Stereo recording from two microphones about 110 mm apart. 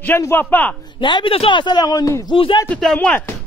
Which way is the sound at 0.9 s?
50° left (ahead or behind).